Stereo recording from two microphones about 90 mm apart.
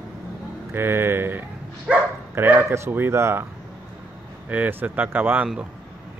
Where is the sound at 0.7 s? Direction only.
25° right (ahead or behind).